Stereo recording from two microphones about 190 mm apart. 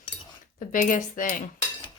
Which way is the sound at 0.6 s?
45° left (ahead or behind).